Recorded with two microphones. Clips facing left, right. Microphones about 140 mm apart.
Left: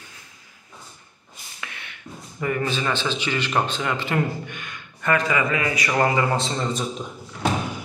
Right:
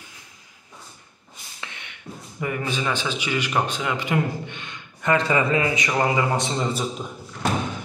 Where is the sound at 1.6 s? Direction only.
20° right (ahead or behind).